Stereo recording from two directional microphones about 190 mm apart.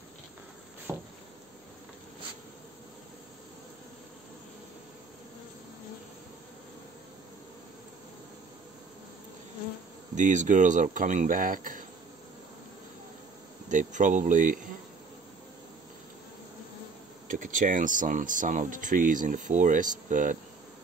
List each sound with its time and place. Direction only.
0.9 s patter: 15° right (ahead or behind)
10.1 s speech: 40° right (ahead or behind)
13.7 s speech: 40° right (ahead or behind)
17.3 s speech: 45° right (ahead or behind)